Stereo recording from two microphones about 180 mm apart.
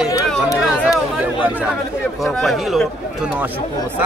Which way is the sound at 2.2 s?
Centre (ahead or behind).